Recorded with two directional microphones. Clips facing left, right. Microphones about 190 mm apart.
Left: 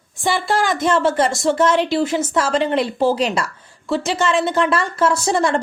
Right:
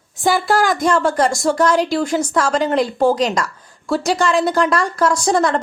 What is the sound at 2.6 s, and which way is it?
Speech, 40° right (ahead or behind).